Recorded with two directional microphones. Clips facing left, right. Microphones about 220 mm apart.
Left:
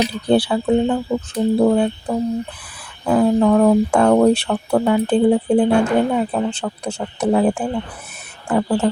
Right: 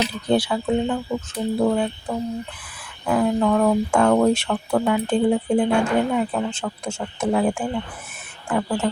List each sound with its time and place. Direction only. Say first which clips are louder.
0.3 s speech: left 4 dB; 30° left (ahead or behind)